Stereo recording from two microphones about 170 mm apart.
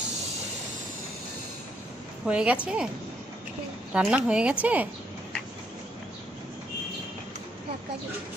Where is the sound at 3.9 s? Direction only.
5° right (ahead or behind).